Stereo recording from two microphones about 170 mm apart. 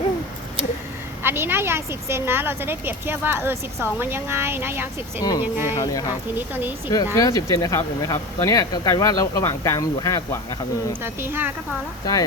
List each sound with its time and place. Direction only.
1.2 s a woman's voice: 15° right (ahead or behind)
5.7 s speech: 20° left (ahead or behind)
6.3 s a woman's voice: 10° right (ahead or behind)
6.9 s speech: 20° left (ahead or behind)
11.0 s a woman's voice: 15° right (ahead or behind)